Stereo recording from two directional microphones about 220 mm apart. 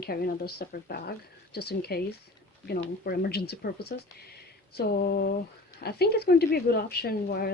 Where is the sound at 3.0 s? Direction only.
45° left (ahead or behind).